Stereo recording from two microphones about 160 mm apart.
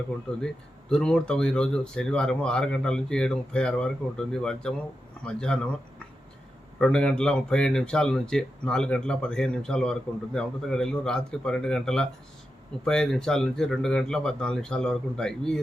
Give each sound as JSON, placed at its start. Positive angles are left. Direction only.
{"t": 0.3, "sound": "speech", "side_deg": 5}
{"t": 6.7, "sound": "speech", "side_deg": 5}